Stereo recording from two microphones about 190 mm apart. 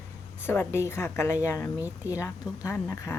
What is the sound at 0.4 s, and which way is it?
Speech, 10° left (ahead or behind).